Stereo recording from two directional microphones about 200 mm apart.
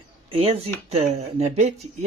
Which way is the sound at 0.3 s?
30° right (ahead or behind).